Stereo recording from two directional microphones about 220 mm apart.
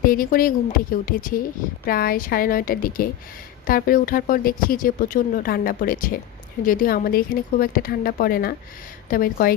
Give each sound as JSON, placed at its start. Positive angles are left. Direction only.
{"t": 0.0, "sound": "a woman's voice", "side_deg": 40}